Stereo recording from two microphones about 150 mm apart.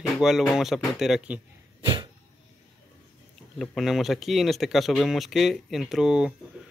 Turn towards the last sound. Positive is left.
turn(degrees=-5)  # may be behind; listen again after turning